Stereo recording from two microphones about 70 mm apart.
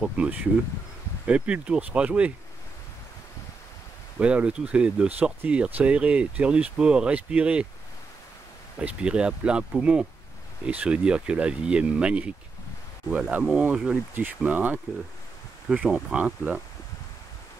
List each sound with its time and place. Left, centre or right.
0.0 s speech: right
4.2 s speech: centre
8.7 s speech: centre
13.4 s speech: centre